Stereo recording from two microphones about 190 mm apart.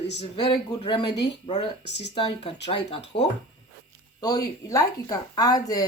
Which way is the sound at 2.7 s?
35° left (ahead or behind).